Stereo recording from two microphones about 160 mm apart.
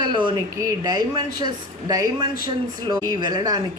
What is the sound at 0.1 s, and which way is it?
A woman's voice, 30° right (ahead or behind).